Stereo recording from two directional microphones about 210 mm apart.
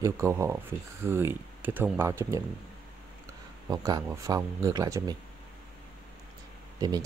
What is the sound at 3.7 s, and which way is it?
Speech, 15° right (ahead or behind).